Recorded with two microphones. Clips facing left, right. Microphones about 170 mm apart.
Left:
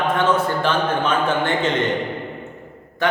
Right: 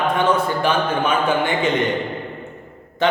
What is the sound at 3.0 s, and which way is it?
Speech, 25° right (ahead or behind).